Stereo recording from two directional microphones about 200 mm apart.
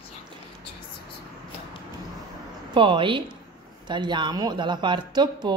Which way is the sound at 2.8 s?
25° right (ahead or behind).